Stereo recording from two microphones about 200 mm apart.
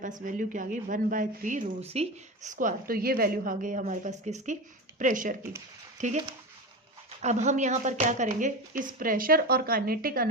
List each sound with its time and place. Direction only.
0.3 s a woman's voice: 40° right (ahead or behind)
7.2 s a woman's voice: 35° right (ahead or behind)